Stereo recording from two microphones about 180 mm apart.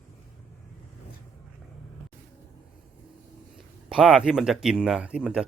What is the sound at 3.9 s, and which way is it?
Speech, 5° right (ahead or behind).